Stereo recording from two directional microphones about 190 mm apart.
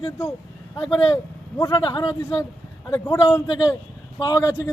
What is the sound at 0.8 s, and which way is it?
Speech, 25° left (ahead or behind).